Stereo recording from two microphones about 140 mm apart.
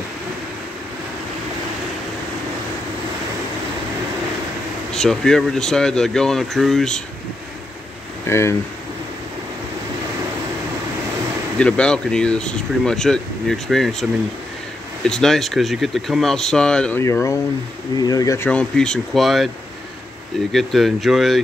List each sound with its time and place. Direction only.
4.9 s speech: 5° left (ahead or behind)
8.3 s speech: 20° left (ahead or behind)
11.5 s speech: 5° left (ahead or behind)
15.0 s speech: 5° left (ahead or behind)
17.0 s speech: 20° left (ahead or behind)
18.5 s speech: 5° left (ahead or behind)
20.5 s speech: centre (ahead or behind)